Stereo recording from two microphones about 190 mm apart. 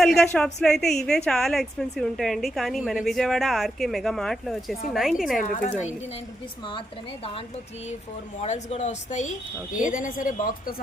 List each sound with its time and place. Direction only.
0.0 s a woman's voice: centre (ahead or behind)
5.4 s a man's voice: 45° left (ahead or behind)
8.4 s a man's voice: 35° left (ahead or behind)